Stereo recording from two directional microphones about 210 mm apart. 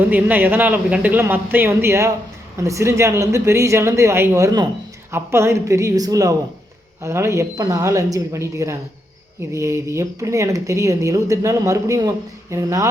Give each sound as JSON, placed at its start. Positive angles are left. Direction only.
{"t": 0.0, "sound": "speech", "side_deg": -10}